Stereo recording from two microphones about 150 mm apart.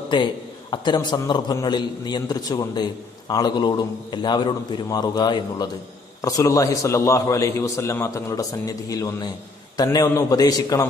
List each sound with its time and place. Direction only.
0.1 s a man's voice: 30° left (ahead or behind)